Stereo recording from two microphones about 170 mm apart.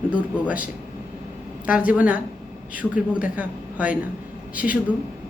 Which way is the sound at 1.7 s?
10° right (ahead or behind).